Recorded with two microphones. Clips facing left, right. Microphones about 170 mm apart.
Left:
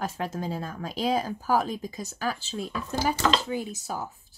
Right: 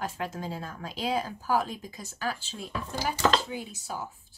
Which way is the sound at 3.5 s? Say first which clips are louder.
Left 5 dB; 45° left (ahead or behind).